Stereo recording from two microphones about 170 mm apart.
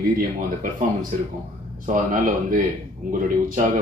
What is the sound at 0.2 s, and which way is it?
A man's voice, 50° right (ahead or behind).